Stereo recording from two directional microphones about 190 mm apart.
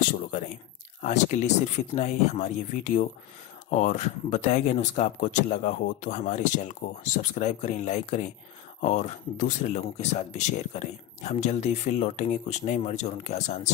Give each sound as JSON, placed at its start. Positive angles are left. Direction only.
{"t": 1.0, "sound": "speech", "side_deg": 35}